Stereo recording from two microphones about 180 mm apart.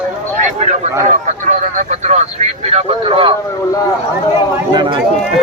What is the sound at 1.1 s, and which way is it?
A man's voice, 45° right (ahead or behind).